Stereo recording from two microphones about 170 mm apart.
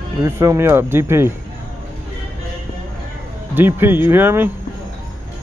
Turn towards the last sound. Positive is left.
turn(degrees=-10)  # may be behind; listen again after turning